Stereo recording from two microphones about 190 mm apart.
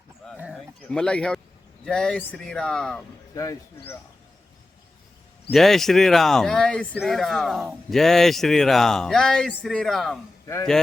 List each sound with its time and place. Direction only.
0.3 s speech: 5° right (ahead or behind)
3.3 s speech: 15° left (ahead or behind)
5.5 s speech: centre (ahead or behind)
10.4 s speech: 15° left (ahead or behind)